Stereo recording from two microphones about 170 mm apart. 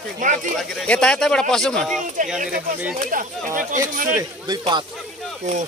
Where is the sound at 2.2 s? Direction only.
50° right (ahead or behind).